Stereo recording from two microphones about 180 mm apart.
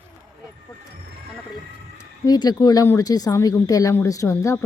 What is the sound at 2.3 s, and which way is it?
Speech, 20° left (ahead or behind).